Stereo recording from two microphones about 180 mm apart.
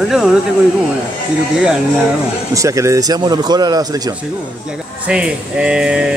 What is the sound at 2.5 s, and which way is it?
Speech, 20° right (ahead or behind).